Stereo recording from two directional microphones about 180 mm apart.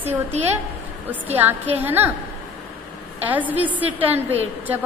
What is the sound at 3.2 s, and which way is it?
Speech, 10° right (ahead or behind).